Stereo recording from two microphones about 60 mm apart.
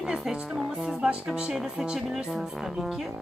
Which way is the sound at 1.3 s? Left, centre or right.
Centre.